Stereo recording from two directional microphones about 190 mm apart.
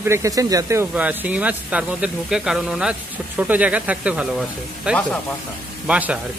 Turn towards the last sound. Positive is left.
turn(degrees=-5)  # may be behind; listen again after turning